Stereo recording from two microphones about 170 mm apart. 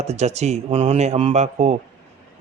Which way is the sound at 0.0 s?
40° right (ahead or behind).